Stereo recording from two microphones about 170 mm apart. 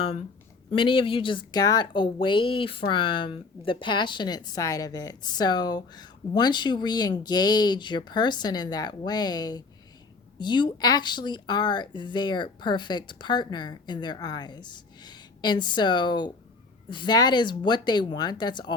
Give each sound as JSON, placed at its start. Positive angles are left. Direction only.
{"t": 0.8, "sound": "speech", "side_deg": 30}